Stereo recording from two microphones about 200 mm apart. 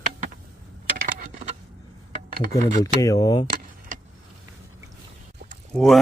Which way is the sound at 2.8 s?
15° left (ahead or behind).